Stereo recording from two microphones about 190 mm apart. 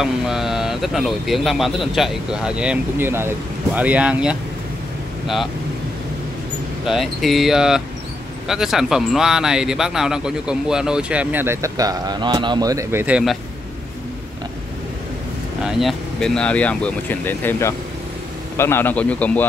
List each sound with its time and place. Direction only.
0.0 s speech: centre (ahead or behind)
6.9 s speech: centre (ahead or behind)
15.6 s speech: centre (ahead or behind)